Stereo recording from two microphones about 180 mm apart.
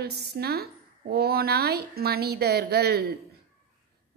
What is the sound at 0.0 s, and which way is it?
A woman's voice, 65° right (ahead or behind).